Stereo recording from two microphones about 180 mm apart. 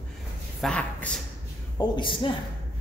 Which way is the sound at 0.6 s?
5° left (ahead or behind).